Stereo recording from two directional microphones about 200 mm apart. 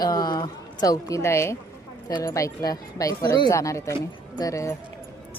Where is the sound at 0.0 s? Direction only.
20° left (ahead or behind).